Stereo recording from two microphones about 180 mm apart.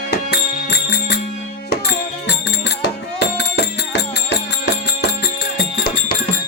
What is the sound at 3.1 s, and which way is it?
Music, 70° left (ahead or behind).